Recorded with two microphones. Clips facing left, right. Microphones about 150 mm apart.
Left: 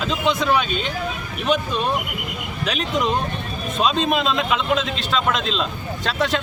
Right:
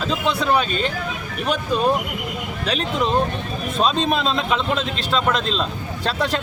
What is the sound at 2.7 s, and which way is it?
Speech, 30° right (ahead or behind).